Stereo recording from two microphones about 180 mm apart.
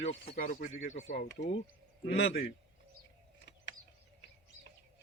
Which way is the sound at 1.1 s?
75° left (ahead or behind).